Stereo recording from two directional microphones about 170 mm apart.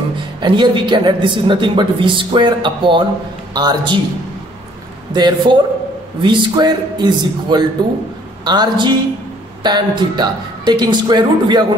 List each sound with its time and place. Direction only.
0.4 s speech: 25° right (ahead or behind)
5.1 s speech: 25° right (ahead or behind)